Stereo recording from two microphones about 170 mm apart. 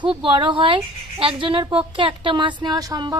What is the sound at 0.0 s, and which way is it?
Speech, 30° right (ahead or behind).